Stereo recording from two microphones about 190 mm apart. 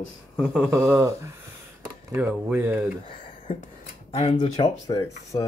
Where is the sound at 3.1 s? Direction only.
30° left (ahead or behind).